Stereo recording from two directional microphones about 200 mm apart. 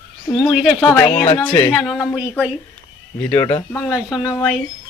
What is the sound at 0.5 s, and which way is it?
Speech, centre (ahead or behind).